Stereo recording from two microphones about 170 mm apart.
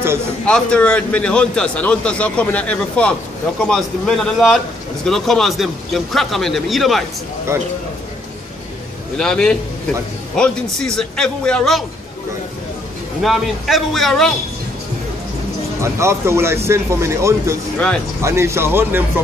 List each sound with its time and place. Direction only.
0.5 s a man's voice: 5° left (ahead or behind)
9.1 s speech: 5° left (ahead or behind)
13.2 s speech: centre (ahead or behind)
15.8 s speech: 15° right (ahead or behind)
17.7 s speech: 5° left (ahead or behind)
18.2 s speech: 15° right (ahead or behind)